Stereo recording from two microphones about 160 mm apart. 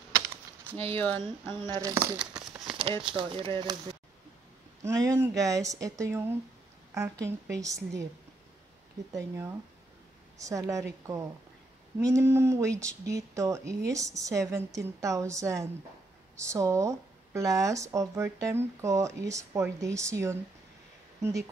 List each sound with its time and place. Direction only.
0.1 s a sound: 15° right (ahead or behind)
0.7 s speech: 10° left (ahead or behind)
1.5 s speech: 25° right (ahead or behind)
2.6 s a sound: 30° right (ahead or behind)
3.1 s speech: 35° right (ahead or behind)
4.8 s speech: 20° right (ahead or behind)
7.2 s speech: 20° right (ahead or behind)
10.4 s speech: 20° right (ahead or behind)